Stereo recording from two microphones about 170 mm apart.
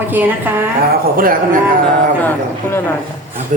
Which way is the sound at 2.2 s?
10° left (ahead or behind).